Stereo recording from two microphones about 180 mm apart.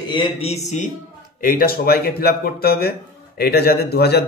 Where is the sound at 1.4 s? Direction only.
55° left (ahead or behind).